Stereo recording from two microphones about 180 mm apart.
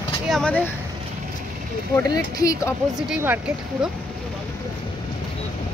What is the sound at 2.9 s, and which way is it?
Speech, 5° right (ahead or behind).